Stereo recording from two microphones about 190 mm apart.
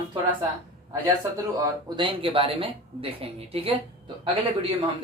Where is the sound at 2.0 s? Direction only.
30° right (ahead or behind).